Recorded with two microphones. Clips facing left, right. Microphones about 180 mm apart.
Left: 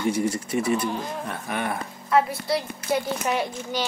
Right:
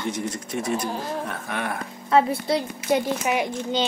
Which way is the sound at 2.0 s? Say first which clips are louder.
Right 2 dB; 25° right (ahead or behind).